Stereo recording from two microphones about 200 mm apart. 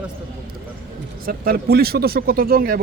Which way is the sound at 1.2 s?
45° right (ahead or behind).